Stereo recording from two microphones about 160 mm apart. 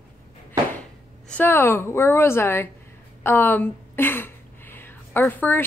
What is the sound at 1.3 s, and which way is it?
A woman's voice, 15° left (ahead or behind).